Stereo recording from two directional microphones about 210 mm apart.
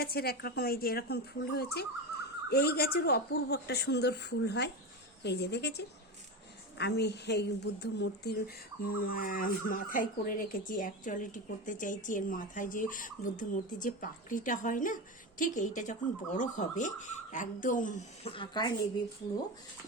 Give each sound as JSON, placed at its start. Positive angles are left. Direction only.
{"t": 0.0, "sound": "a woman's voice", "side_deg": 50}